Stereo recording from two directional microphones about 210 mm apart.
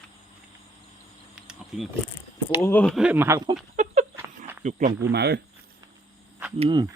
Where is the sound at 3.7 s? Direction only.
35° right (ahead or behind).